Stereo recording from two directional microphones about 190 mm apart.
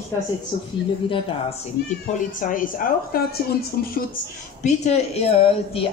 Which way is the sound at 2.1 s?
45° left (ahead or behind).